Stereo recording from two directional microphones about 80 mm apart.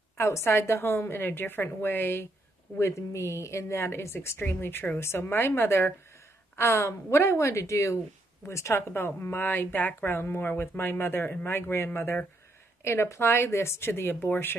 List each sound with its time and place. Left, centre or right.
0.2 s a woman's voice: left